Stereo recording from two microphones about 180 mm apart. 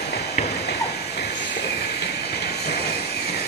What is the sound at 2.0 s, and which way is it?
Vehicle, 65° left (ahead or behind).